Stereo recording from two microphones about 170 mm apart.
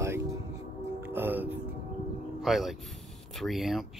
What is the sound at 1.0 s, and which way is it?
Music, 10° right (ahead or behind).